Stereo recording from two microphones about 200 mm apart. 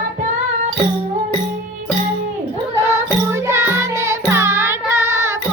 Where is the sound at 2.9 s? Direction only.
15° right (ahead or behind).